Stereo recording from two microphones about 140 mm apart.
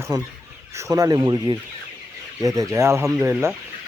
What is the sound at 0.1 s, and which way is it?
Speech, 25° right (ahead or behind).